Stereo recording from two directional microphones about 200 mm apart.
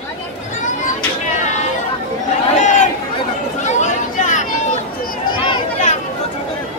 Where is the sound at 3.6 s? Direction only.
35° left (ahead or behind).